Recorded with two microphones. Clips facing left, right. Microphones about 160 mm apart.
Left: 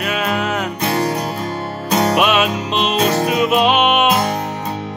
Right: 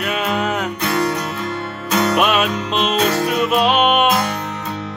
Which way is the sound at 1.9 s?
35° left (ahead or behind).